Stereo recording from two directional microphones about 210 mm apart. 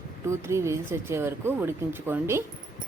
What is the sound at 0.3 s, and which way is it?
Speech, 15° right (ahead or behind).